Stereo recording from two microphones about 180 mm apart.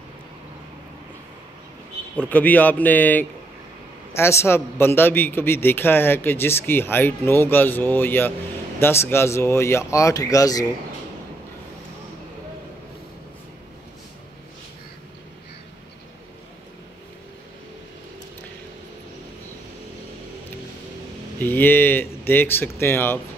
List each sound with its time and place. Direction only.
2.1 s a man's voice: 10° left (ahead or behind)
21.4 s a man's voice: 10° left (ahead or behind)